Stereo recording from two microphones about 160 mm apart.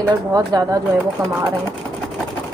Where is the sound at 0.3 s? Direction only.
25° right (ahead or behind).